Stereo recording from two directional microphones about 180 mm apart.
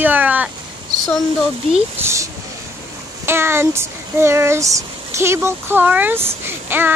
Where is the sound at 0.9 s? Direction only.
25° right (ahead or behind).